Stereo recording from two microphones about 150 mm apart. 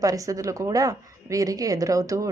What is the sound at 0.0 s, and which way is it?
A woman's voice, 20° right (ahead or behind).